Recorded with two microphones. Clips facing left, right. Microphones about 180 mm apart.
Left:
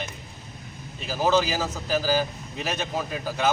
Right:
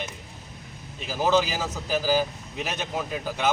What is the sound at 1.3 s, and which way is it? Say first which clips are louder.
Speech: even; 15° right (ahead or behind).